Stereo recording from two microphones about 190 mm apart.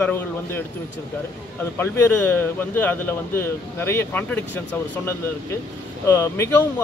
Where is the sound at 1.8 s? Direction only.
10° left (ahead or behind).